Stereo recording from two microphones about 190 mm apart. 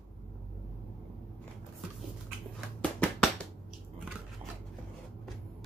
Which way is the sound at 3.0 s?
5° left (ahead or behind).